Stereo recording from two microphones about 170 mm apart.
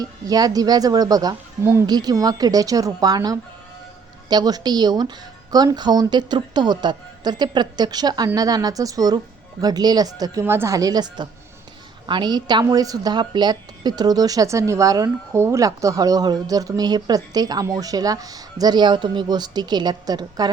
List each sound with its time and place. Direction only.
0.0 s a woman's voice: 20° right (ahead or behind)